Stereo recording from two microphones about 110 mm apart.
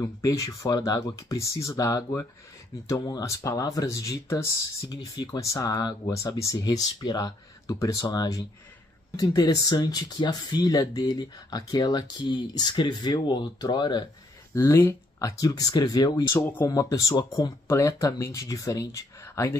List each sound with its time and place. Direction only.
0.0 s speech: 30° left (ahead or behind)
14.5 s speech: 25° left (ahead or behind)
16.3 s speech: 20° left (ahead or behind)
16.6 s speech: 30° left (ahead or behind)
17.6 s speech: 25° left (ahead or behind)